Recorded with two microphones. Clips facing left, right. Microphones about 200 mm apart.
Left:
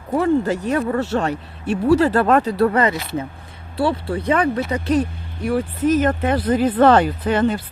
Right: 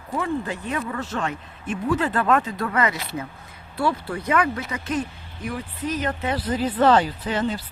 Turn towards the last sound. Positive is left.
turn(degrees=55)  # may be behind; listen again after turning